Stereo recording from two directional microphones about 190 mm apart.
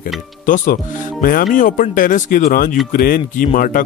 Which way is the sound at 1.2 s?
50° left (ahead or behind).